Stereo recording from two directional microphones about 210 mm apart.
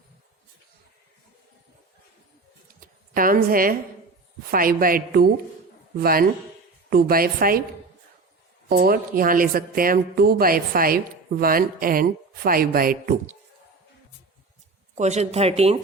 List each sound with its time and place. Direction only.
2.8 s a woman's voice: 45° right (ahead or behind)
8.7 s speech: 45° right (ahead or behind)
14.9 s speech: 35° right (ahead or behind)